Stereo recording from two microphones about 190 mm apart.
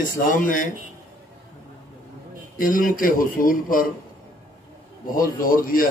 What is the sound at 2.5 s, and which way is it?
A man's voice, 45° left (ahead or behind).